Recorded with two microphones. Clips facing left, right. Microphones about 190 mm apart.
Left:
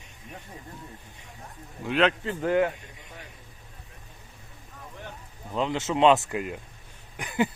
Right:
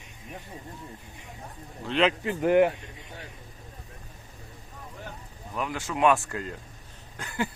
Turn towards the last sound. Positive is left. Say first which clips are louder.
# left 5 dB
turn(degrees=15)  # may be behind; listen again after turning